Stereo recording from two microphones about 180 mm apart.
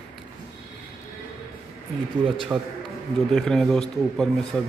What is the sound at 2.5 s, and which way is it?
Speech, 15° right (ahead or behind).